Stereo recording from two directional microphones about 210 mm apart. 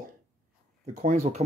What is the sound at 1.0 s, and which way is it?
Speech, 35° right (ahead or behind).